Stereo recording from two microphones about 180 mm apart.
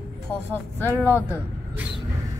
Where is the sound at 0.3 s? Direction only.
10° left (ahead or behind).